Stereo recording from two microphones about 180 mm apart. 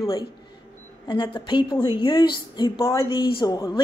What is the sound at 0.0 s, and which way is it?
A woman's voice, 25° left (ahead or behind).